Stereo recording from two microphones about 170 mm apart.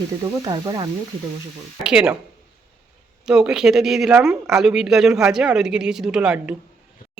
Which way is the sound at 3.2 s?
5° right (ahead or behind).